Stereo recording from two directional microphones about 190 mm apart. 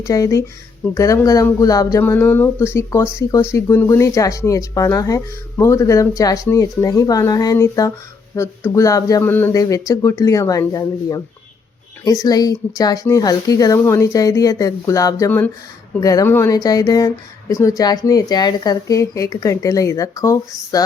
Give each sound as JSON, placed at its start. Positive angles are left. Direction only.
{"t": 0.0, "sound": "speech", "side_deg": 15}